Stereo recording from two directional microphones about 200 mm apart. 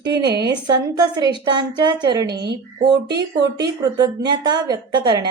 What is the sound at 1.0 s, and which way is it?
Speech, 20° right (ahead or behind).